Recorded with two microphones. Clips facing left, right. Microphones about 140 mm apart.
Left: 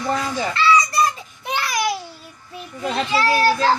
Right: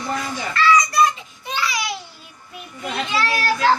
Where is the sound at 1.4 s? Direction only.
55° left (ahead or behind).